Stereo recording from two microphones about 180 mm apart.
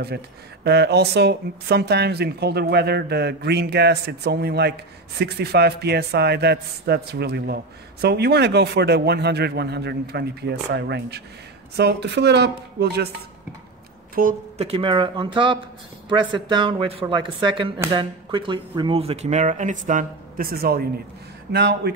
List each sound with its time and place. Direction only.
0.7 s a man's voice: 65° right (ahead or behind)
14.2 s speech: 55° right (ahead or behind)
14.6 s speech: 30° right (ahead or behind); by 20.8 s 55° right (ahead or behind)
21.5 s speech: 70° right (ahead or behind)